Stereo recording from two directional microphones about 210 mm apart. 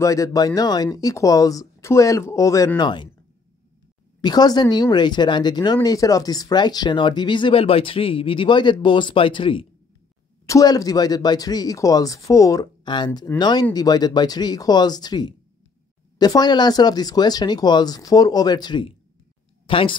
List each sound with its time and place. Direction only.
0.0 s speech: 15° left (ahead or behind)
4.2 s speech: 20° left (ahead or behind)